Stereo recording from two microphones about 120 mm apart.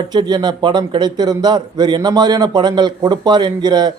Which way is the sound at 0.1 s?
35° right (ahead or behind).